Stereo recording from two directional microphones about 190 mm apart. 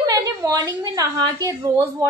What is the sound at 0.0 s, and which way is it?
A woman's voice, 15° right (ahead or behind).